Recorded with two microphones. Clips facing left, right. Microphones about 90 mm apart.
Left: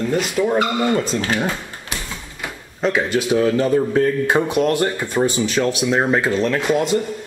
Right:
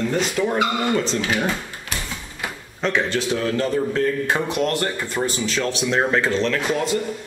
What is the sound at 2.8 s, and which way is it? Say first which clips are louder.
Speech: left 3 dB; 5° left (ahead or behind).